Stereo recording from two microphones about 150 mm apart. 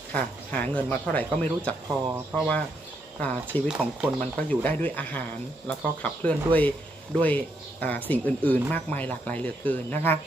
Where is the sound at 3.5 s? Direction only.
10° left (ahead or behind).